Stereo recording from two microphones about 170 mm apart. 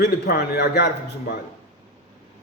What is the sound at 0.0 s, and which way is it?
Speech, 65° left (ahead or behind).